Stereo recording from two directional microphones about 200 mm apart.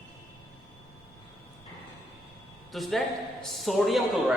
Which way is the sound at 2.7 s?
Centre (ahead or behind).